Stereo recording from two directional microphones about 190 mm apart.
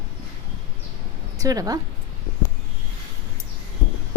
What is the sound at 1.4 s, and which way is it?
Speech, 20° right (ahead or behind).